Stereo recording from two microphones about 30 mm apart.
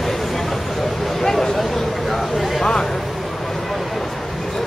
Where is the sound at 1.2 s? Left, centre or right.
Centre.